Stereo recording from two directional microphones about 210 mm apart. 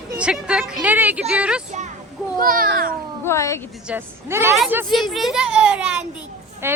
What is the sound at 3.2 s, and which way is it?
Speech, 15° left (ahead or behind).